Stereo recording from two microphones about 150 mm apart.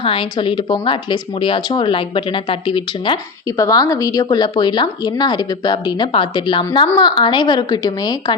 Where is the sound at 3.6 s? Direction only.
25° left (ahead or behind).